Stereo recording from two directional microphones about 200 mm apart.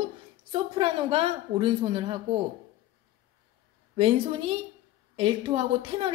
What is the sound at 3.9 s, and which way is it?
A woman's voice, 30° right (ahead or behind).